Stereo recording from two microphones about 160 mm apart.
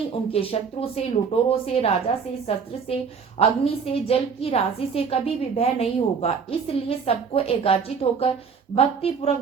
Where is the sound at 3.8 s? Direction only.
35° left (ahead or behind).